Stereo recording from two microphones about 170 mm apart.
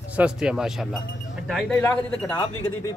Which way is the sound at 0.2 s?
5° right (ahead or behind).